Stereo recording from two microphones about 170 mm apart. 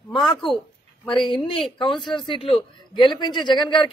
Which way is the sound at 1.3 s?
30° left (ahead or behind).